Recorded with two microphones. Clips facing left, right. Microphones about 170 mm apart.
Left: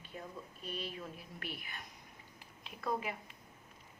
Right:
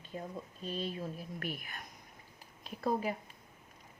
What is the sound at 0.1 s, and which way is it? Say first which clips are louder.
Speech: right 5 dB; 30° right (ahead or behind).